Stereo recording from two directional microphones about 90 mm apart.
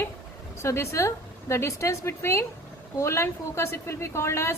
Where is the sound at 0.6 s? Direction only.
30° left (ahead or behind).